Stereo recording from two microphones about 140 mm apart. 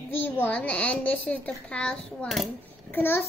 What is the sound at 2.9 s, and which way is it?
Speech, 15° left (ahead or behind).